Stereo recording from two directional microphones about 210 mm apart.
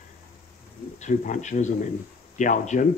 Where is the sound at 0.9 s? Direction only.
35° left (ahead or behind).